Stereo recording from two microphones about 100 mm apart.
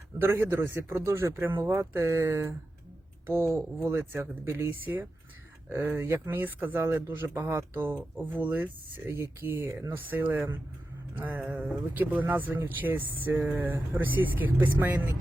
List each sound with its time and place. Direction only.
0.2 s speech: 25° right (ahead or behind)